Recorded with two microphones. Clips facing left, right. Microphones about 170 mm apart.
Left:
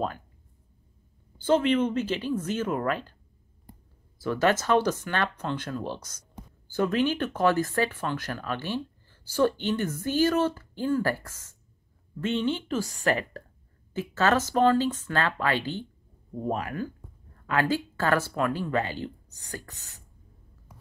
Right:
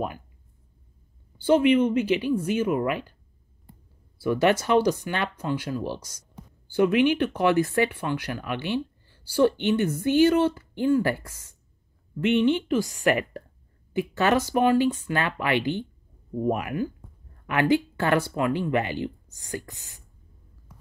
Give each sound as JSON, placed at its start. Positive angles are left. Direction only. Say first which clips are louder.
{"t": 1.4, "sound": "speech", "louder": "right 4 dB", "side_deg": -10}
{"t": 4.2, "sound": "speech", "louder": "right 3 dB", "side_deg": -15}